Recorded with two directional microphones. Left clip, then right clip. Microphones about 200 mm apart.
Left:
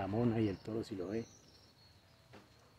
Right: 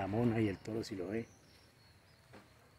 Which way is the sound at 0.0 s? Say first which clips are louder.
Right 1 dB; 5° right (ahead or behind).